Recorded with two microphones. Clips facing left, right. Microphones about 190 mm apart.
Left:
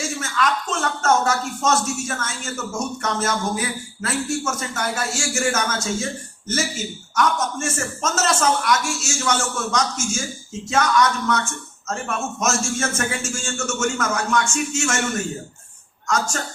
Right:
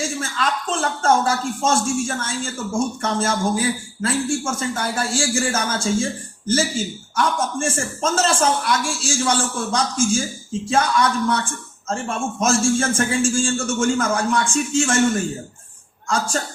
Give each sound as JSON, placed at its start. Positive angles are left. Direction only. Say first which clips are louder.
{"t": 0.2, "sound": "speech", "louder": "left 1 dB", "side_deg": -30}
{"t": 16.0, "sound": "speech", "louder": "right 1 dB", "side_deg": -30}